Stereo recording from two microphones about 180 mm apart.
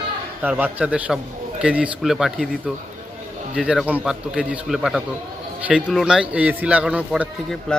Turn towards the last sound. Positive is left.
turn(degrees=0)  # may be behind; listen again after turning